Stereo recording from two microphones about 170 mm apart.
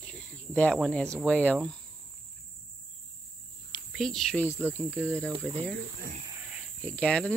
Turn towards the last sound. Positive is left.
turn(degrees=5)  # may be behind; listen again after turning